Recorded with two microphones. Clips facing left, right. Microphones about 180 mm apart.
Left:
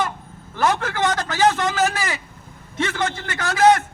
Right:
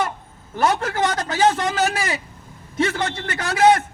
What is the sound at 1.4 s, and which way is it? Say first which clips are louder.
A man's voice: even; 30° right (ahead or behind).